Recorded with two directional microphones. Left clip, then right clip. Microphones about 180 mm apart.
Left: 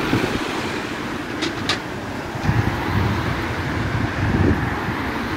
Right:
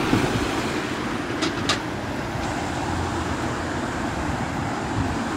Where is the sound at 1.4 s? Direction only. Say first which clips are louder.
Left 1 dB; 60° right (ahead or behind).